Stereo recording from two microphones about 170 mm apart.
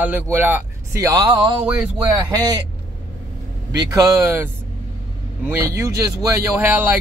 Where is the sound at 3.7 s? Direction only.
20° right (ahead or behind).